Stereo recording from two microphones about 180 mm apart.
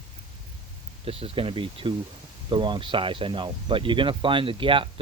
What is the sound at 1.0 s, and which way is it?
Speech, 30° right (ahead or behind).